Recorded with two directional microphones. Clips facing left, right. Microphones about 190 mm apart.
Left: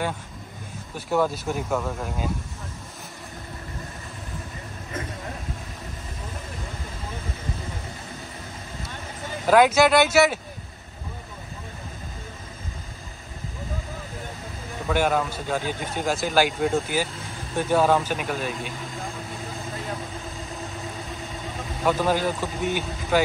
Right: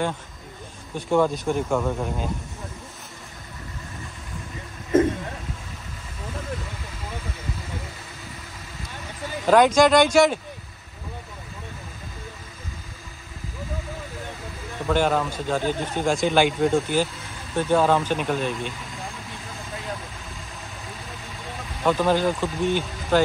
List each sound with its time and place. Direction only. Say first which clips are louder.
0.9 s speech: right 3 dB; 5° left (ahead or behind)
9.5 s speech: right 1 dB; 5° left (ahead or behind)
14.9 s speech: right 1 dB; 5° left (ahead or behind)
21.8 s speech: right 2 dB; 10° left (ahead or behind)